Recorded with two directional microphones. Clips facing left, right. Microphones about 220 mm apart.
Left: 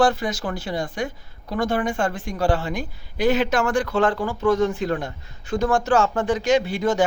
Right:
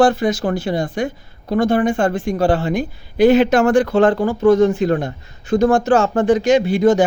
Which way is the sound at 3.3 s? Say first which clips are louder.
Right 7 dB; 60° right (ahead or behind).